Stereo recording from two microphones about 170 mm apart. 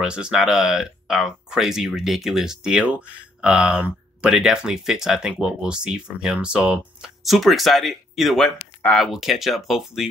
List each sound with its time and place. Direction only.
0.0 s speech: 5° right (ahead or behind)